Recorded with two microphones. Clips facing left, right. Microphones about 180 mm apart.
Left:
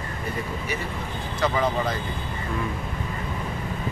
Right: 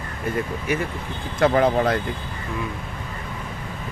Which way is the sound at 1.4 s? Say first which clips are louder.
Right 6 dB; 55° right (ahead or behind).